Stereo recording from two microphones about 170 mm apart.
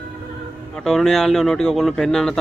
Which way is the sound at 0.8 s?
Centre (ahead or behind).